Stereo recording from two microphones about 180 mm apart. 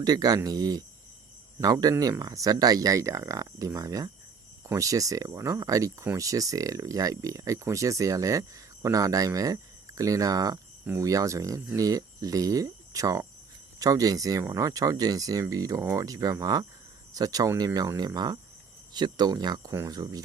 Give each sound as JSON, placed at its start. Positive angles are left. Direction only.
{"t": 0.0, "sound": "speech", "side_deg": -20}